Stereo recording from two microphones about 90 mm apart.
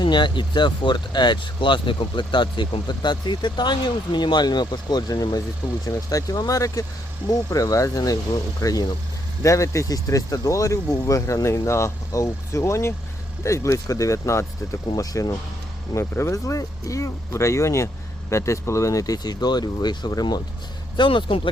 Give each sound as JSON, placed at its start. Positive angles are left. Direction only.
{"t": 0.0, "sound": "speech", "side_deg": 60}
{"t": 16.0, "sound": "speech", "side_deg": 30}
{"t": 20.9, "sound": "speech", "side_deg": 60}